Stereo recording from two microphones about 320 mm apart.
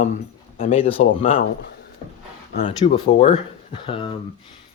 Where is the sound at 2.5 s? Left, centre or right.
Centre.